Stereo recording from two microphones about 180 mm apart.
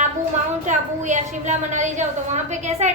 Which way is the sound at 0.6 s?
45° right (ahead or behind).